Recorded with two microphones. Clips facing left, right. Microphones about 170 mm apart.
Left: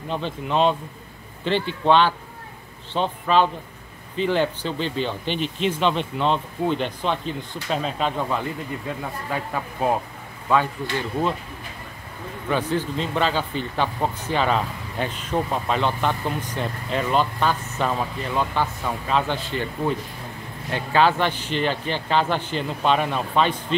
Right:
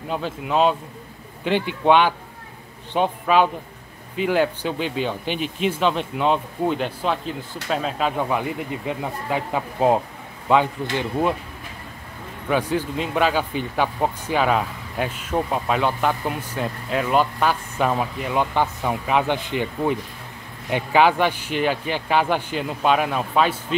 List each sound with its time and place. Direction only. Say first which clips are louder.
0.1 s speech: right 1 dB; 5° right (ahead or behind)
8.2 s speech: right 2 dB; 15° right (ahead or behind)
12.4 s speech: right 2 dB; 10° right (ahead or behind)